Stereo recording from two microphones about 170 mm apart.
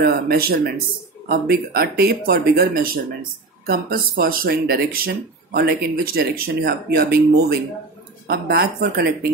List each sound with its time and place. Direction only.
0.0 s speech: 60° right (ahead or behind)